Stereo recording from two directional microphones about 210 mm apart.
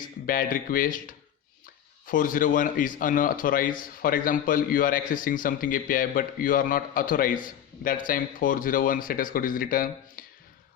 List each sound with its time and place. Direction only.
0.3 s a man's voice: 40° left (ahead or behind)